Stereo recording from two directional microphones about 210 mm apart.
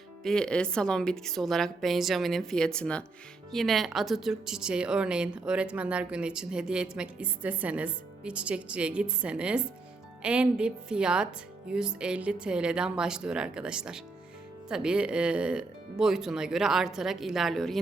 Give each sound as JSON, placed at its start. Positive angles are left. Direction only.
{"t": 0.2, "sound": "speech", "side_deg": 5}